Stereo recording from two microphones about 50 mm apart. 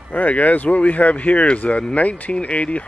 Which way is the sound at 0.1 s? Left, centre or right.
Left.